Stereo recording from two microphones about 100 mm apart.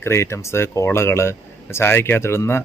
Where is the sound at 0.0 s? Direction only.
25° left (ahead or behind).